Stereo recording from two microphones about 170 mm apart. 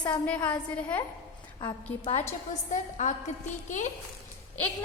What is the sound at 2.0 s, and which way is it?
A woman's voice, 40° left (ahead or behind).